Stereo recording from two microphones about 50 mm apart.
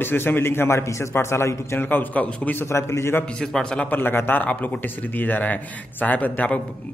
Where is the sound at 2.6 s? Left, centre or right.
Left.